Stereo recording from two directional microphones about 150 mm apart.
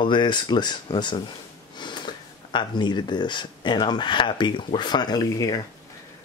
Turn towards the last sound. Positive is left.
turn(degrees=25)  # may be behind; listen again after turning